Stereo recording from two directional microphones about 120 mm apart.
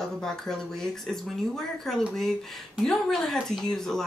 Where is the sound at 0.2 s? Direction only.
5° left (ahead or behind).